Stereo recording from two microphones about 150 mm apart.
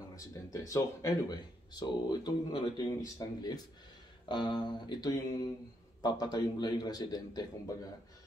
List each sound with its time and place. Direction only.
0.1 s speech: 25° left (ahead or behind)